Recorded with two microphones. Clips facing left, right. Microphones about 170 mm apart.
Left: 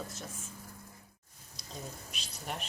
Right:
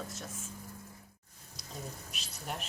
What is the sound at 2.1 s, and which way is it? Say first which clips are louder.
Speech: even; centre (ahead or behind).